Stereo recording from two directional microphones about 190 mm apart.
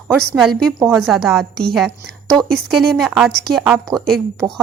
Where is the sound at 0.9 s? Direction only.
Centre (ahead or behind).